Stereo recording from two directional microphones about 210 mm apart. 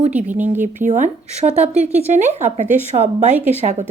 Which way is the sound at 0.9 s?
35° right (ahead or behind).